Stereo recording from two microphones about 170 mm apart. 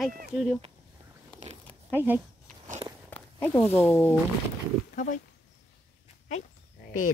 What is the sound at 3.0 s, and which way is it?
Speech, 10° left (ahead or behind).